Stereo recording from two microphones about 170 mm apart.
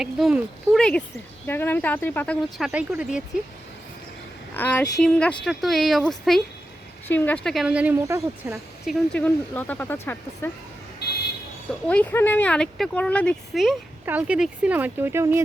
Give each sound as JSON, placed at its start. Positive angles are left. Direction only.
{"t": 0.0, "sound": "speech", "side_deg": -5}
{"t": 4.5, "sound": "speech", "side_deg": 10}
{"t": 9.1, "sound": "speech", "side_deg": 10}
{"t": 11.0, "sound": "vehicle", "side_deg": 70}
{"t": 11.9, "sound": "speech", "side_deg": 10}